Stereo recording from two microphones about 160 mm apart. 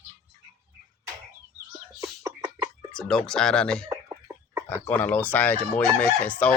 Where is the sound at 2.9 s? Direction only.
5° left (ahead or behind).